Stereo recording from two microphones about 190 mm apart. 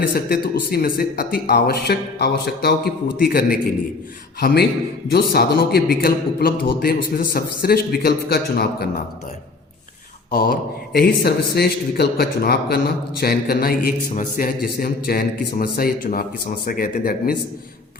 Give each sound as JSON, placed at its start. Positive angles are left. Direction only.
{"t": 0.1, "sound": "a man's voice", "side_deg": 50}
{"t": 10.3, "sound": "a man's voice", "side_deg": 50}